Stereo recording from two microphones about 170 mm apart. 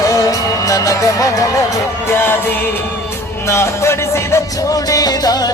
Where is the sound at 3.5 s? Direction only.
15° left (ahead or behind).